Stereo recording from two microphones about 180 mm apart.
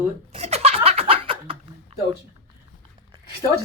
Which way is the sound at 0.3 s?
35° right (ahead or behind).